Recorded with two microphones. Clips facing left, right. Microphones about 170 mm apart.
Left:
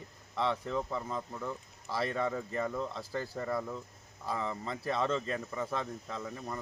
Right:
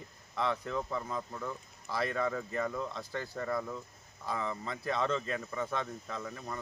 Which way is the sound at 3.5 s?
10° left (ahead or behind).